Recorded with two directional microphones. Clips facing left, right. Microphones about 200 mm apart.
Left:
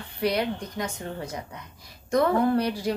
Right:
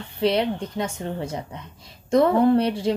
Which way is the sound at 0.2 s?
25° right (ahead or behind).